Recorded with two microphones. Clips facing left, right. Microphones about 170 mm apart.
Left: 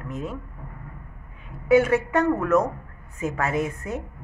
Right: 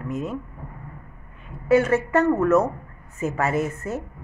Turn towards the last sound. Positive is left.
turn(degrees=0)  # may be behind; listen again after turning